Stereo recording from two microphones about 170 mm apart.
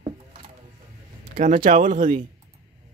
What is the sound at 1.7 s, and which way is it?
Speech, 50° right (ahead or behind).